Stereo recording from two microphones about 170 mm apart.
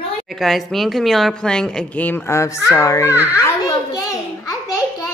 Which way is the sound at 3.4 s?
20° left (ahead or behind).